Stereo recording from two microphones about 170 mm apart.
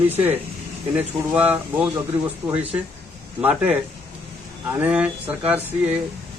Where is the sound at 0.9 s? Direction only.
10° right (ahead or behind).